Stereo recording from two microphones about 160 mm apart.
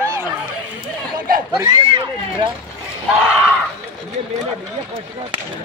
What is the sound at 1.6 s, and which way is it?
Speech, 25° right (ahead or behind).